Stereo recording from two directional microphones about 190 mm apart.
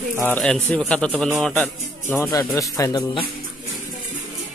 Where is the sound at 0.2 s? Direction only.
5° left (ahead or behind).